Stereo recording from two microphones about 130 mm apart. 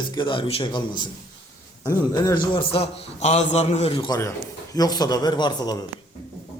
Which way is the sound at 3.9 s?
30° left (ahead or behind).